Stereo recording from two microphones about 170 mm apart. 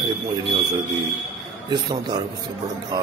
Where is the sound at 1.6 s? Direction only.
25° right (ahead or behind).